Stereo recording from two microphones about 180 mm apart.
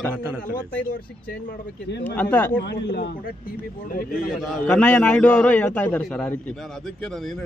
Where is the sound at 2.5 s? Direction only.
65° left (ahead or behind).